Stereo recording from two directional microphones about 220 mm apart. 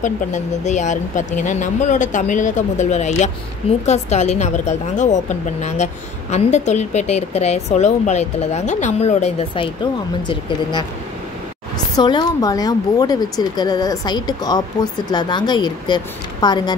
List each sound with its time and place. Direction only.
0.0 s a woman's voice: 35° left (ahead or behind)
12.0 s a woman's voice: 20° left (ahead or behind)